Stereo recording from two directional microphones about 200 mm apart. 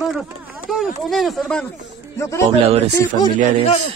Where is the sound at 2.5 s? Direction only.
30° right (ahead or behind).